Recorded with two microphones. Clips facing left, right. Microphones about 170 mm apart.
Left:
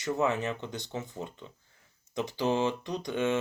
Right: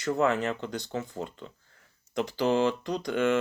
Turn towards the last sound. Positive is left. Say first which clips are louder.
# right 3 dB
turn(degrees=20)  # may be behind; listen again after turning